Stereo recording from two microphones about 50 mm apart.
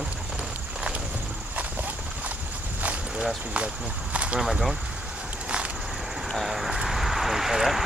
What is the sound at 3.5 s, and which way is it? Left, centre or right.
Speech, right.